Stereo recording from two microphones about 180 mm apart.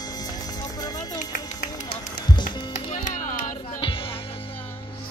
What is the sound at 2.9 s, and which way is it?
Music, 45° left (ahead or behind).